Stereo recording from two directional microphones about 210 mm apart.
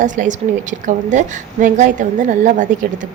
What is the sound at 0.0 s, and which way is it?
A woman's voice, 35° right (ahead or behind).